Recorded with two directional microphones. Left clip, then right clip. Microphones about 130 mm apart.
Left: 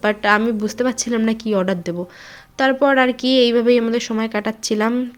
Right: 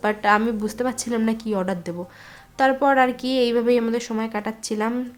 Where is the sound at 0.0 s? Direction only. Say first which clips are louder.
Left 3 dB; 20° left (ahead or behind).